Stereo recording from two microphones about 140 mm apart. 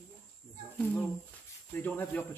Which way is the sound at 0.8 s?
15° left (ahead or behind).